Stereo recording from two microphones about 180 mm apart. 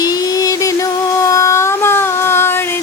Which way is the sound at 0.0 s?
20° left (ahead or behind).